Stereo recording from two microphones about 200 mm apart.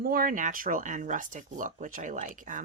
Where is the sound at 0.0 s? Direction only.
45° right (ahead or behind).